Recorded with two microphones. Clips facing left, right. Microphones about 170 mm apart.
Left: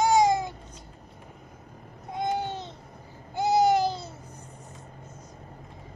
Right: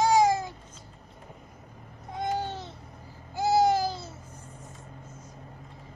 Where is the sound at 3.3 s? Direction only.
20° left (ahead or behind).